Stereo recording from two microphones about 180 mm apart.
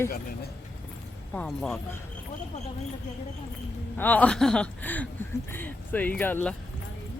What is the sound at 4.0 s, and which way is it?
Speech, 10° left (ahead or behind).